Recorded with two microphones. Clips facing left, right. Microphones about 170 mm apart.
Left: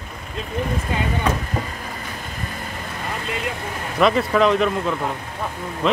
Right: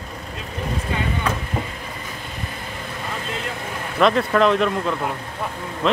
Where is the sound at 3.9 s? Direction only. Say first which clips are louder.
Even; centre (ahead or behind).